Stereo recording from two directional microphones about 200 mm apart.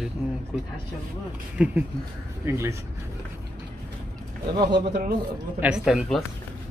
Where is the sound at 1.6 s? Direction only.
10° right (ahead or behind).